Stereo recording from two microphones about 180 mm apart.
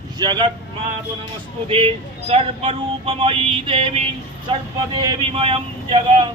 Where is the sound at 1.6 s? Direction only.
30° right (ahead or behind).